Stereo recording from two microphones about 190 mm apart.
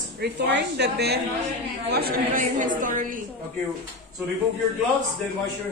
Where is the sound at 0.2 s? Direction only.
65° right (ahead or behind); by 2.7 s 50° right (ahead or behind).